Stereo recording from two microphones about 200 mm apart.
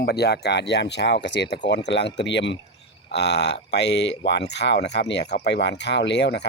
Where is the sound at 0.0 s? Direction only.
55° left (ahead or behind).